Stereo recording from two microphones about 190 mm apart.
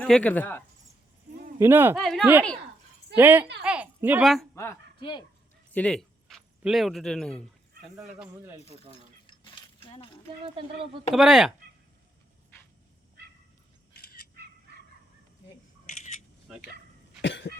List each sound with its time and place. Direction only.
0.0 s speech: 5° left (ahead or behind)
1.5 s speech: 10° right (ahead or behind)
2.0 s speech: centre (ahead or behind)
3.6 s a sound: 5° right (ahead or behind)
4.5 s a woman's voice: 15° left (ahead or behind)
4.9 s speech: 25° left (ahead or behind)
5.7 s speech: 5° left (ahead or behind)
8.6 s keys jangling: 30° left (ahead or behind)
11.1 s speech: centre (ahead or behind)
13.9 s bird: 55° left (ahead or behind)
17.2 s cough: 65° left (ahead or behind)